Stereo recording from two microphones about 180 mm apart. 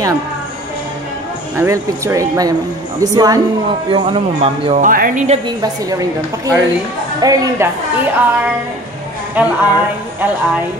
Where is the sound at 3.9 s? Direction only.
30° right (ahead or behind).